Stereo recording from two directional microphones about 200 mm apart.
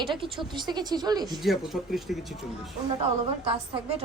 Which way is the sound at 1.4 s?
Centre (ahead or behind).